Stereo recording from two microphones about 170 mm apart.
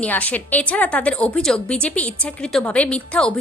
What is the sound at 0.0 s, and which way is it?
A woman's voice, 10° left (ahead or behind).